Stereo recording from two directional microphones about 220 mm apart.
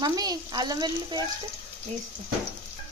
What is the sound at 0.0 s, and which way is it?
A woman's voice, 15° right (ahead or behind).